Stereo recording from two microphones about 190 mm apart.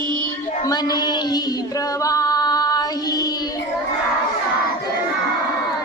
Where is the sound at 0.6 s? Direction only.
20° left (ahead or behind).